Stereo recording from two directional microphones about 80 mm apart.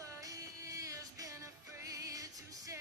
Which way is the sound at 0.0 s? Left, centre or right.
Right.